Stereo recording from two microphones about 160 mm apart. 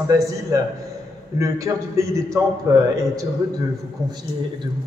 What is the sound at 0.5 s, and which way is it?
A man's voice, 20° right (ahead or behind).